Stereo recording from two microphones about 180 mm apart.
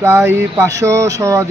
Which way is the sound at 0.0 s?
15° right (ahead or behind).